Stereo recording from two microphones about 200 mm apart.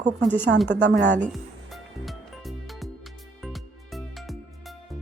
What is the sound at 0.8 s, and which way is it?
Speech, 65° right (ahead or behind).